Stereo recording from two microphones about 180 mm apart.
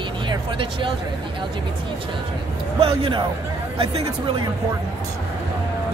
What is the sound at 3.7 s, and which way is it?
Speech, 30° right (ahead or behind).